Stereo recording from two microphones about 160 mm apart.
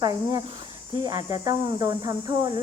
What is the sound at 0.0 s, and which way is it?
Speech, 25° right (ahead or behind).